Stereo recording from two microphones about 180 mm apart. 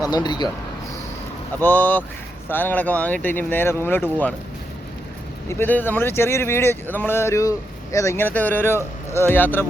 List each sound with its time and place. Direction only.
0.0 s speech: 25° left (ahead or behind)
1.6 s speech: 10° left (ahead or behind)
5.5 s speech: 10° left (ahead or behind)